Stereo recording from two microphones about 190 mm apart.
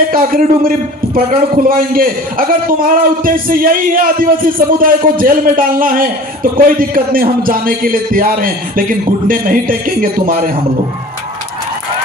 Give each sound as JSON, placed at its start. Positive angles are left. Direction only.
{"t": 0.1, "sound": "a man's voice", "side_deg": -50}